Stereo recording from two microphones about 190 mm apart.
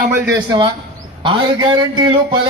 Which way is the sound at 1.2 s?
25° right (ahead or behind).